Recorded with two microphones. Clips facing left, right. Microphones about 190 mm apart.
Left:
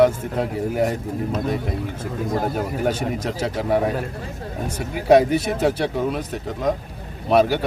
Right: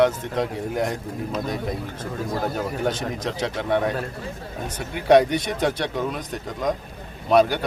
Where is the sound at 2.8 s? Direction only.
5° left (ahead or behind).